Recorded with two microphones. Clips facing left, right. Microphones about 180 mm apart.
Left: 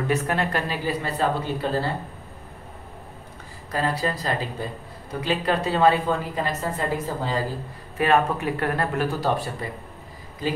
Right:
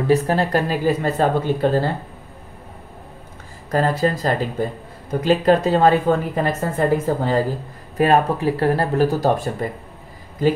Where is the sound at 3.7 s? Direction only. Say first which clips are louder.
Right 6 dB; 45° right (ahead or behind).